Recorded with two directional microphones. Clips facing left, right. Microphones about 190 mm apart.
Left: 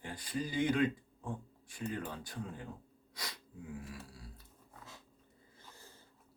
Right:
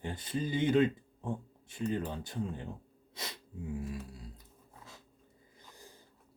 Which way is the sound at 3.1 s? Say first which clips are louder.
Right 3 dB; 25° right (ahead or behind).